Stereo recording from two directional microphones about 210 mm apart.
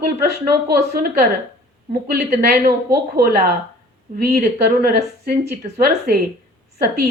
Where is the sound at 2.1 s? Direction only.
50° right (ahead or behind).